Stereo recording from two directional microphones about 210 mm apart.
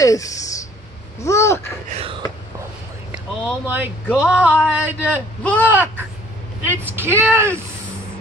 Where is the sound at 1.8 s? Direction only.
30° right (ahead or behind).